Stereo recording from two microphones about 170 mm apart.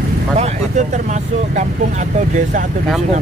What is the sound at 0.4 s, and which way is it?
Vehicle, 40° right (ahead or behind).